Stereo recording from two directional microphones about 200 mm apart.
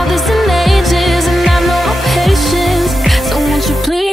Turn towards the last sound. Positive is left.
turn(degrees=0)  # may be behind; listen again after turning